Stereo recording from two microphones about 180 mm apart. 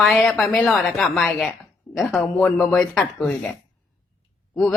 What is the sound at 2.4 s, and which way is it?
Speech, 5° left (ahead or behind).